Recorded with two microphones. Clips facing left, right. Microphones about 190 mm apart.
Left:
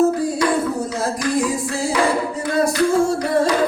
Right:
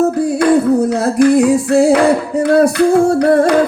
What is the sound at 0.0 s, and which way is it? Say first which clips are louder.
Music: right 4 dB; 65° right (ahead or behind).